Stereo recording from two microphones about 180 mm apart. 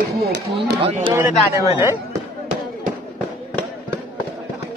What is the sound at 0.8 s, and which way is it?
Speech, 35° right (ahead or behind).